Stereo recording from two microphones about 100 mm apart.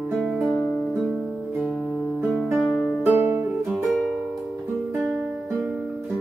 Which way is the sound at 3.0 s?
25° right (ahead or behind).